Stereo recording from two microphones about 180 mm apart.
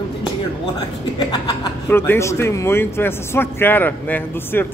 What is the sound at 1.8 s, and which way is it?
A man's voice, 10° left (ahead or behind).